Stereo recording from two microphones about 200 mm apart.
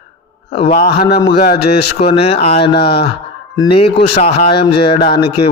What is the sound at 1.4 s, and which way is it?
Speech, 50° left (ahead or behind).